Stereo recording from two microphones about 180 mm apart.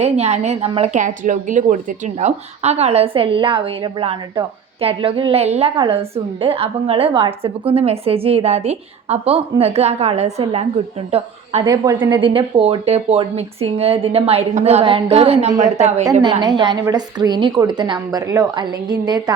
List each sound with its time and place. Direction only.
0.0 s a woman's voice: 35° right (ahead or behind)
11.6 s a woman's voice: 20° right (ahead or behind)
12.2 s a woman's voice: 30° right (ahead or behind)
16.2 s a woman's voice: 25° right (ahead or behind)